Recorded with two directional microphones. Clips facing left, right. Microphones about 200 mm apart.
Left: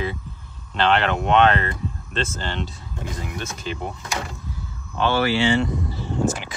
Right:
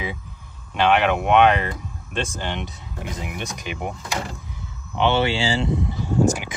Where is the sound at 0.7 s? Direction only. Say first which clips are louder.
Right 2 dB; 10° right (ahead or behind); by 5.8 s 30° right (ahead or behind).